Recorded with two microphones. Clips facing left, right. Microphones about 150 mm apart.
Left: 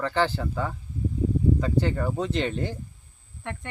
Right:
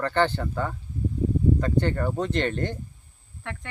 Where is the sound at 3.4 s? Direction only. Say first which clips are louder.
Left 1 dB; 20° left (ahead or behind).